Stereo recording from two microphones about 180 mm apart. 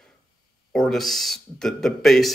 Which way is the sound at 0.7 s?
Centre (ahead or behind).